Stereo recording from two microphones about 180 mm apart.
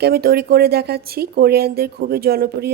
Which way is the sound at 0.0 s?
60° right (ahead or behind).